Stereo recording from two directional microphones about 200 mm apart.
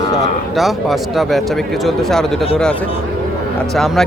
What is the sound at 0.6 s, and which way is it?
Speech, centre (ahead or behind).